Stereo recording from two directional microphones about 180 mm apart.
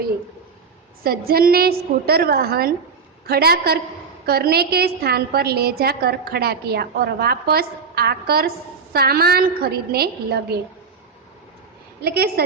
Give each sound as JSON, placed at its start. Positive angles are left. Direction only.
{"t": 1.0, "sound": "a woman's voice", "side_deg": -55}
{"t": 12.0, "sound": "a woman's voice", "side_deg": -60}